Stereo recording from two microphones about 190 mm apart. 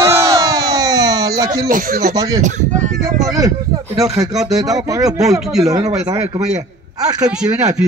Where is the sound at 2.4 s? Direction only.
40° right (ahead or behind).